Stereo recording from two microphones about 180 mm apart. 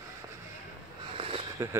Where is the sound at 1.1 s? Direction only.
30° right (ahead or behind).